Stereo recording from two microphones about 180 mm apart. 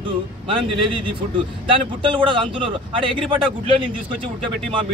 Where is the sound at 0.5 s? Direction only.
30° right (ahead or behind).